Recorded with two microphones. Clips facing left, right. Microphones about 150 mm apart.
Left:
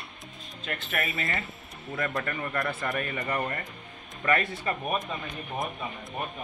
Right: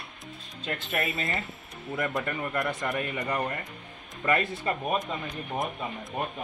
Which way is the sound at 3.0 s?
5° right (ahead or behind).